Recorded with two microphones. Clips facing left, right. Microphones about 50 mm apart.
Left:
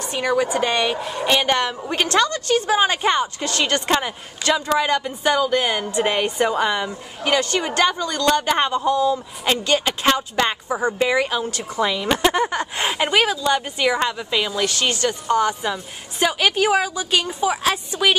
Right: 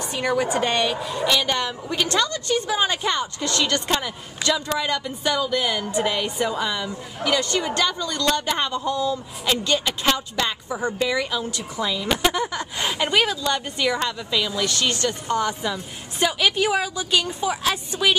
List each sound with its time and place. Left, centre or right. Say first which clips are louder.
0.2 s speech: left 2 dB; centre
0.6 s a man's voice: left 2 dB; left
2.8 s a man's voice: left 4 dB; left
4.6 s a man's voice: left 5 dB; centre
11.7 s a woman's voice: left 4 dB; left
12.9 s a man's voice: left 2 dB; centre